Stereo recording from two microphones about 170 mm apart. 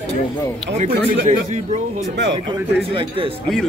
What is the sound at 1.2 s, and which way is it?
Speech, 45° right (ahead or behind).